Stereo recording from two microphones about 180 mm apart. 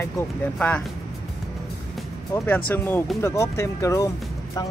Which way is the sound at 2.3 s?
10° left (ahead or behind).